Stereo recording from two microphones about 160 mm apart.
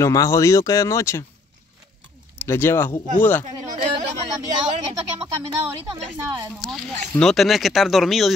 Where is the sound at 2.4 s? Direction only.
15° left (ahead or behind).